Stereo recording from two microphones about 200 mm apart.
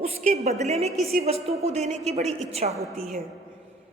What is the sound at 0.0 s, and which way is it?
A woman's voice, 35° right (ahead or behind).